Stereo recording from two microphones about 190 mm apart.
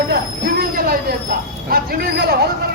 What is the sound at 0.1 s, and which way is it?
Train, 50° right (ahead or behind).